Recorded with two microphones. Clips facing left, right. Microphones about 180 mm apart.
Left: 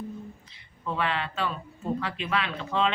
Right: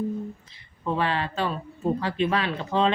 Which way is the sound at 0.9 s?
35° right (ahead or behind).